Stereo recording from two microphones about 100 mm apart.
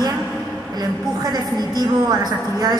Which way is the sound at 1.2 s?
45° right (ahead or behind).